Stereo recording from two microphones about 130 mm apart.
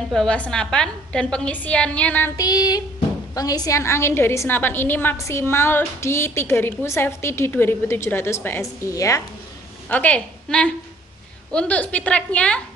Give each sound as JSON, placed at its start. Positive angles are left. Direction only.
{"t": 0.1, "sound": "a woman's voice", "side_deg": 5}
{"t": 2.3, "sound": "child singing", "side_deg": 30}
{"t": 3.3, "sound": "a woman's voice", "side_deg": 30}
{"t": 9.8, "sound": "a woman's voice", "side_deg": 10}